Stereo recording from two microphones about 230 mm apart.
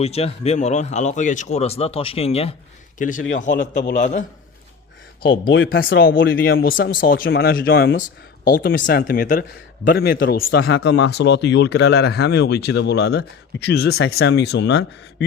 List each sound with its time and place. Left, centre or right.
0.0 s speech: left
3.5 s speech: left
5.6 s speech: left
8.4 s speech: left